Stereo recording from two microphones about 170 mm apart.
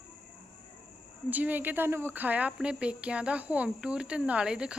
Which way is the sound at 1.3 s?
10° right (ahead or behind).